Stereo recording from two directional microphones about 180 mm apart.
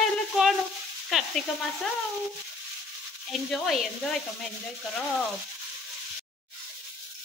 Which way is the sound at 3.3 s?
Centre (ahead or behind).